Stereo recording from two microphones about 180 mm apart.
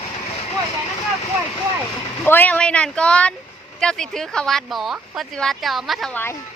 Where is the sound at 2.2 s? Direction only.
10° left (ahead or behind).